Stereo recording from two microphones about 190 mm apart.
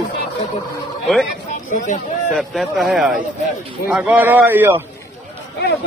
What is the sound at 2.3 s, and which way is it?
A man's voice, centre (ahead or behind).